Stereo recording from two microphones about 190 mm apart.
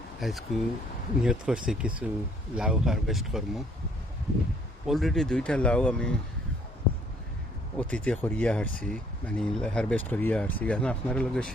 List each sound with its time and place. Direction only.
0.2 s speech: centre (ahead or behind)
4.9 s speech: centre (ahead or behind)
7.8 s speech: 5° left (ahead or behind)